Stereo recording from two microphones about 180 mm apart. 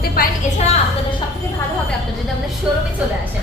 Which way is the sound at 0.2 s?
55° left (ahead or behind).